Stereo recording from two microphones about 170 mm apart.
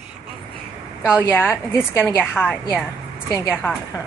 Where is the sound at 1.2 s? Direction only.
15° left (ahead or behind).